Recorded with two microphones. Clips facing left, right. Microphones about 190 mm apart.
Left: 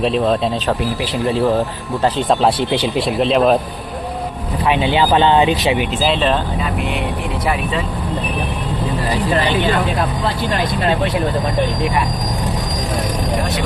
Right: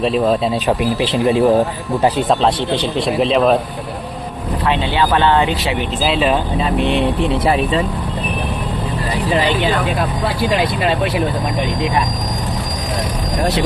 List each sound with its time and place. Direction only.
0.0 s speech: centre (ahead or behind)
0.7 s speech: 15° right (ahead or behind)
2.4 s speech: 5° left (ahead or behind)
4.6 s speech: 15° left (ahead or behind)
6.0 s speech: 5° right (ahead or behind)
6.6 s speech: 30° right (ahead or behind)